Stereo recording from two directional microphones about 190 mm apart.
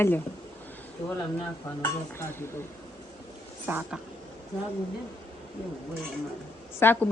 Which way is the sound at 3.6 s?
10° right (ahead or behind).